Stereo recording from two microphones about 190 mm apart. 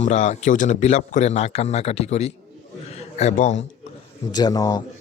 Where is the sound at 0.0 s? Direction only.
40° left (ahead or behind).